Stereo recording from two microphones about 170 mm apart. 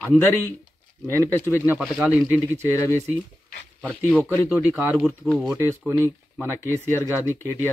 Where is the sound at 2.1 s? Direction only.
10° right (ahead or behind).